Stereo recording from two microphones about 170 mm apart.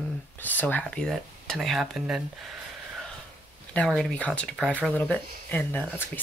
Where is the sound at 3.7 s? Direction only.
5° left (ahead or behind).